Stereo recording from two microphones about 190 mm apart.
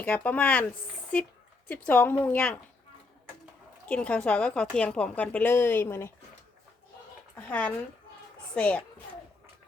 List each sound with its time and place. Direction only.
0.0 s a woman's voice: 5° left (ahead or behind)
3.8 s a woman's voice: 5° left (ahead or behind)
7.3 s a woman's voice: 5° left (ahead or behind)